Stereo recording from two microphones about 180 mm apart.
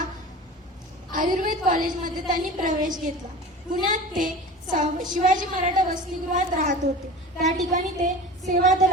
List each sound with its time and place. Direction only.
1.1 s a woman's voice: 50° right (ahead or behind)